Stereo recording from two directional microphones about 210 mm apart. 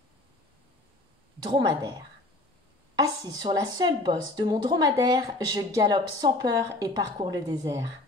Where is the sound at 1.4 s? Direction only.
20° right (ahead or behind).